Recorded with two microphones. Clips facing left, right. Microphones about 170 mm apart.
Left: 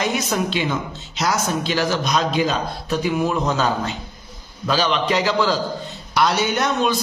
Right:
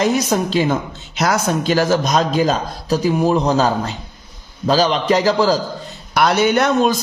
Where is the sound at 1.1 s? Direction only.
55° right (ahead or behind); by 5.5 s 40° right (ahead or behind).